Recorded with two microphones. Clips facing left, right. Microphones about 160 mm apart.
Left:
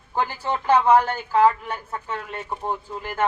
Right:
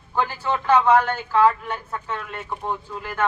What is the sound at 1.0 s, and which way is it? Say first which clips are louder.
Speech: even; 35° left (ahead or behind).